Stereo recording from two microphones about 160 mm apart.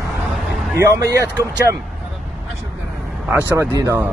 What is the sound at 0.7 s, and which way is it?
Speech, 20° right (ahead or behind).